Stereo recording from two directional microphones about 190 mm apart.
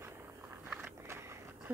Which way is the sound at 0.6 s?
5° right (ahead or behind).